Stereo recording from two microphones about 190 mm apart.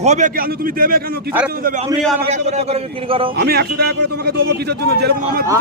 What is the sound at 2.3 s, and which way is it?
Speech, 35° right (ahead or behind).